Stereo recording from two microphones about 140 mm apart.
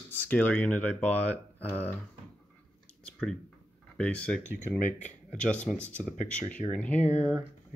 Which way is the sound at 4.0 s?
5° left (ahead or behind).